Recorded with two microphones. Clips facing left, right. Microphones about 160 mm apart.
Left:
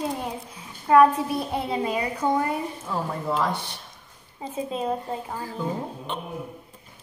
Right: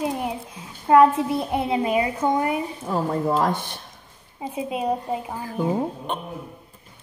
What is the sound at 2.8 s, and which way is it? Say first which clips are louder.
Speech: right 6 dB; 40° right (ahead or behind).